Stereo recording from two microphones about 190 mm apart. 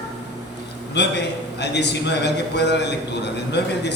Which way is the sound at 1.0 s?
65° left (ahead or behind).